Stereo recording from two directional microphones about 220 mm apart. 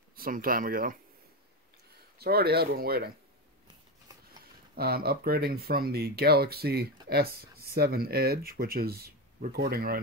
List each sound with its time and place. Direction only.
0.1 s speech: 40° right (ahead or behind)
2.1 s speech: 45° right (ahead or behind)
3.6 s a sound: 15° right (ahead or behind)
4.7 s speech: 45° right (ahead or behind)